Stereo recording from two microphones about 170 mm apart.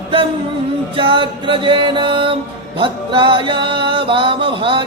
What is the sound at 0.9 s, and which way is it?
Music, 30° right (ahead or behind).